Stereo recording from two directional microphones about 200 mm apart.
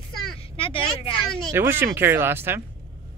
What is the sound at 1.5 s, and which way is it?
Speech, 10° right (ahead or behind).